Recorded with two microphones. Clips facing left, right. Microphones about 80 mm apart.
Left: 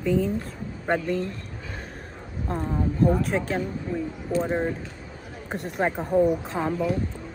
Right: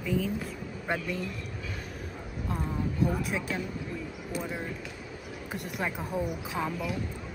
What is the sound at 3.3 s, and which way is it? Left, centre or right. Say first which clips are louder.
Speech: left 7 dB; left.